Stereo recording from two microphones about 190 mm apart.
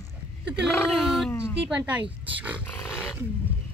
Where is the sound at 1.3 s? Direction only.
15° left (ahead or behind).